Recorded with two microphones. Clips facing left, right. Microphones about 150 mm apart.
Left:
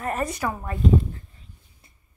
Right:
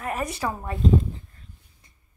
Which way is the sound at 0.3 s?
30° right (ahead or behind).